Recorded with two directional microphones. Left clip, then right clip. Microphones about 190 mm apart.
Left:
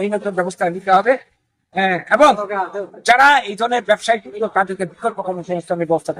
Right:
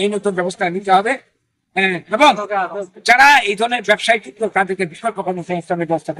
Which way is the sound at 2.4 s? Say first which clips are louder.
Right 2 dB; 35° left (ahead or behind).